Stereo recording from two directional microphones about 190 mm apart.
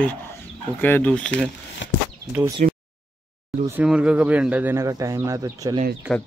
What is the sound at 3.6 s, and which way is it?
Speech, 10° right (ahead or behind).